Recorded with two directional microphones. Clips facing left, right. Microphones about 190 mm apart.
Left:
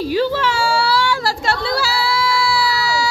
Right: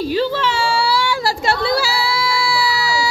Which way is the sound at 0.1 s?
10° left (ahead or behind).